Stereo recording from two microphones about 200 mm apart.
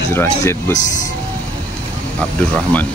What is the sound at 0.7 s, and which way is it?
Speech, 40° left (ahead or behind).